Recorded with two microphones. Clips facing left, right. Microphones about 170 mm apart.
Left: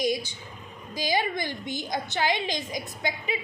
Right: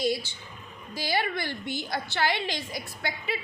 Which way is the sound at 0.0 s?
15° left (ahead or behind).